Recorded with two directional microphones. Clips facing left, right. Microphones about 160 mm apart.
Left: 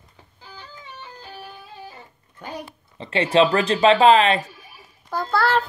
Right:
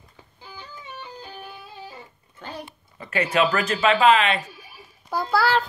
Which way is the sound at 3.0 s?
25° left (ahead or behind).